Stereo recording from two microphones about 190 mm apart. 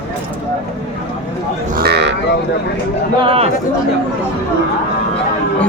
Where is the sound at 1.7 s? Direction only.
55° right (ahead or behind).